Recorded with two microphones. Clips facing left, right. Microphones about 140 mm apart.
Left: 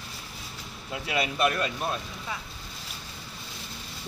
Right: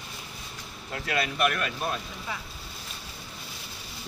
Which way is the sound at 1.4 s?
25° left (ahead or behind).